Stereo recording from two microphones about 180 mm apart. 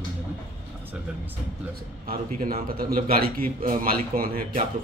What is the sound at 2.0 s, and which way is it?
A man's voice, 55° right (ahead or behind).